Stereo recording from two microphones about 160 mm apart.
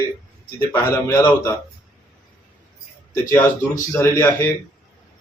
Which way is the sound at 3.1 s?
20° left (ahead or behind).